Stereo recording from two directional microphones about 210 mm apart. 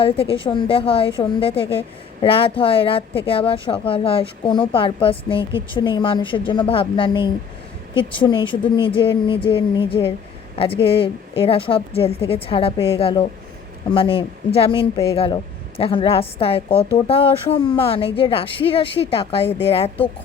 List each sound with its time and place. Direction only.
0.0 s a woman's voice: 25° left (ahead or behind)